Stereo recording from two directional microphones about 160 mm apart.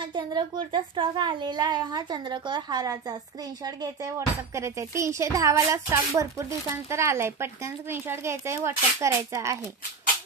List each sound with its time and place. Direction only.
0.1 s speech: 30° right (ahead or behind)